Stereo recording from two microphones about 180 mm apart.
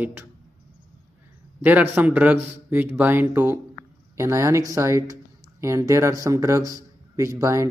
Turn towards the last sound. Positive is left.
turn(degrees=-15)  # may be behind; listen again after turning